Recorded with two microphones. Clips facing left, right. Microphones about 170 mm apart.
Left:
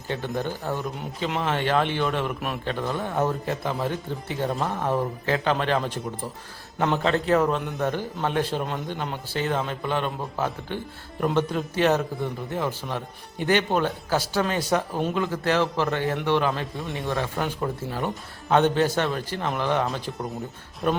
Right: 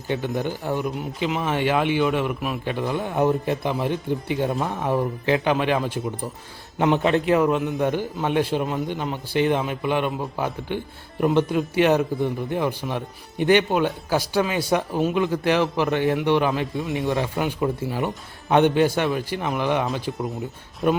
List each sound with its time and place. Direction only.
0.1 s a man's voice: 15° right (ahead or behind)
2.9 s a man's voice: 20° right (ahead or behind)
7.8 s a man's voice: 15° right (ahead or behind)
9.3 s a man's voice: 15° right (ahead or behind)